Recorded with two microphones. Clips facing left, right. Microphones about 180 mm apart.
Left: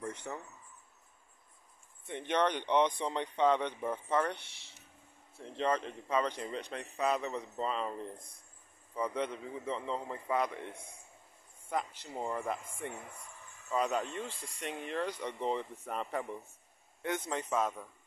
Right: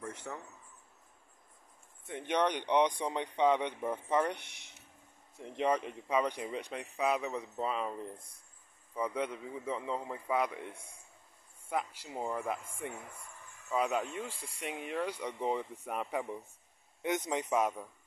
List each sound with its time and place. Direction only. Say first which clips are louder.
0.1 s speech: left 1 dB; centre (ahead or behind)
2.0 s speech: even; 10° right (ahead or behind)
11.7 s speech: even; 10° right (ahead or behind)